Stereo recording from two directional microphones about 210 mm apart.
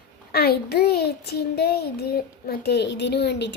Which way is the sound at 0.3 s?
50° left (ahead or behind).